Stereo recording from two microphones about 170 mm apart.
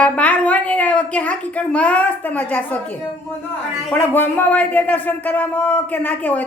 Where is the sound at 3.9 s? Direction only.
10° left (ahead or behind).